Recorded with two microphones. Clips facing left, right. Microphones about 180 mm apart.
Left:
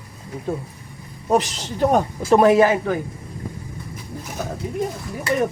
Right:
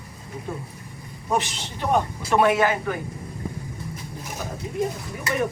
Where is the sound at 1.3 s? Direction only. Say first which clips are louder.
Left 6 dB; 40° left (ahead or behind).